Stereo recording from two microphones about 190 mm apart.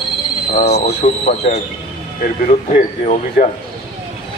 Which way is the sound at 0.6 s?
60° left (ahead or behind).